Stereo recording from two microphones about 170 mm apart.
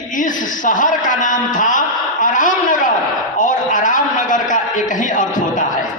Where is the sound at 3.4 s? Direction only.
50° left (ahead or behind).